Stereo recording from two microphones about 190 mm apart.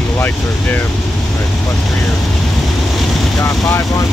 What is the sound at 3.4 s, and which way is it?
Speech, 15° left (ahead or behind).